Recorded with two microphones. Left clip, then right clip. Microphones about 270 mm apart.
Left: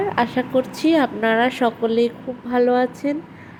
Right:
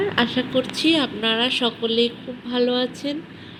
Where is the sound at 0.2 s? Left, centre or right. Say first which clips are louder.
Left 3 dB; left.